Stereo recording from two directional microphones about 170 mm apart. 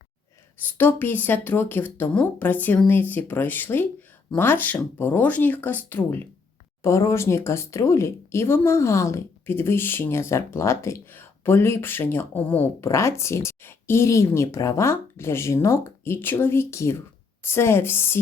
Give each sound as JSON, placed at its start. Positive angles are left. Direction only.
{"t": 0.6, "sound": "speech", "side_deg": 10}